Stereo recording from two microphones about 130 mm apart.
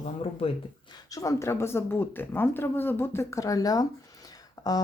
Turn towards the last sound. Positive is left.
turn(degrees=30)  # may be behind; listen again after turning